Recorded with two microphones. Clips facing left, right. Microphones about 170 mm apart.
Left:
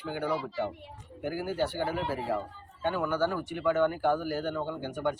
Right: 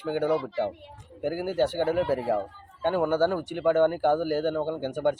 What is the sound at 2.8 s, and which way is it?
Speech, 50° right (ahead or behind).